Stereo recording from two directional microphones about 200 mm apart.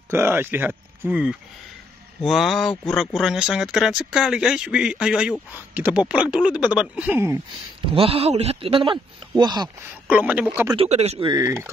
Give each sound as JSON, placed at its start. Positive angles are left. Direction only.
{"t": 0.1, "sound": "speech", "side_deg": -10}
{"t": 7.9, "sound": "speech", "side_deg": -30}
{"t": 10.0, "sound": "speech", "side_deg": -5}
{"t": 10.8, "sound": "speech", "side_deg": -30}